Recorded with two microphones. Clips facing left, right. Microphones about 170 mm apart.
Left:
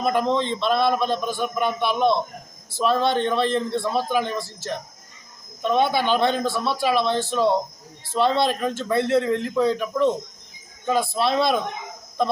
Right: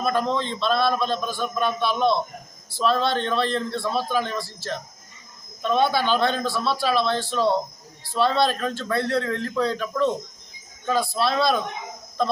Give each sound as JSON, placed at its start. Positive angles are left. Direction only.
{"t": 0.0, "sound": "a man's voice", "side_deg": 20}